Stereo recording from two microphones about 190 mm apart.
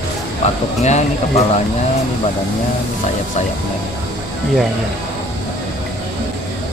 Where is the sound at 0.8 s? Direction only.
35° left (ahead or behind).